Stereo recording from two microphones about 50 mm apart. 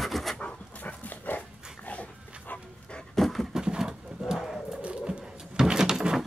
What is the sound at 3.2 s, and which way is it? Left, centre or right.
Pant, centre.